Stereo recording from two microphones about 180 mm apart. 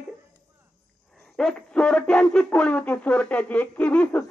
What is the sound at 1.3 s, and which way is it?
Speech, 5° left (ahead or behind).